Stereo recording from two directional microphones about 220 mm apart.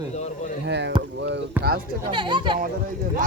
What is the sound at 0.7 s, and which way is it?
Speech, 50° right (ahead or behind).